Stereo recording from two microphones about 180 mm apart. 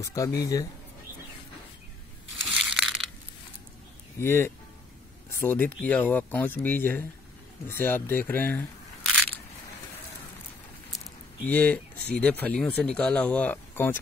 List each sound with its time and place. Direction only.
0.0 s speech: 20° left (ahead or behind)
2.4 s crushing: centre (ahead or behind)
4.2 s speech: 15° left (ahead or behind)
11.4 s speech: 10° left (ahead or behind)